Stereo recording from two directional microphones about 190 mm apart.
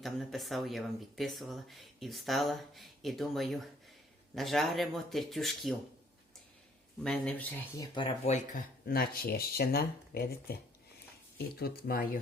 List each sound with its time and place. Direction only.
0.0 s speech: centre (ahead or behind)
7.0 s speech: 5° left (ahead or behind)
8.3 s speech: 50° left (ahead or behind)